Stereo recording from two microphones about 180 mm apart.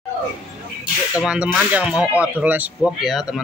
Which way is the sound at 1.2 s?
5° right (ahead or behind).